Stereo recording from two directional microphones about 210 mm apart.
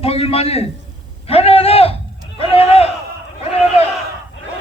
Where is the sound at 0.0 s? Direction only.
30° left (ahead or behind).